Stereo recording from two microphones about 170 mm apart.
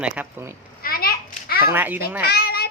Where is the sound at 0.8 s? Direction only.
60° left (ahead or behind).